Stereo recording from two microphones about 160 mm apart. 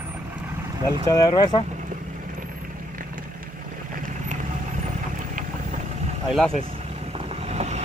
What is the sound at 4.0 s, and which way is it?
Vehicle, 50° right (ahead or behind).